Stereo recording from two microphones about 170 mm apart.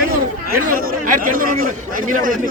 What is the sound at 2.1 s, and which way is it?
Speech, 50° right (ahead or behind).